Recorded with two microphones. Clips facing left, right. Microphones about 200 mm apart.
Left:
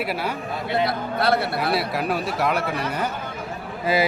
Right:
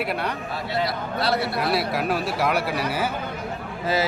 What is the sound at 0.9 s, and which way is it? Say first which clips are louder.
Speech: left 3 dB; 55° left (ahead or behind).